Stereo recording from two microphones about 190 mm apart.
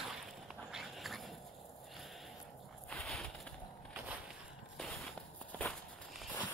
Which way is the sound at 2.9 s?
5° left (ahead or behind).